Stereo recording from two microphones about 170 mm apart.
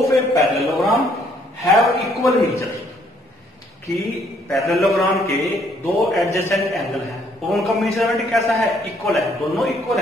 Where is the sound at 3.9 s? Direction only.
Centre (ahead or behind).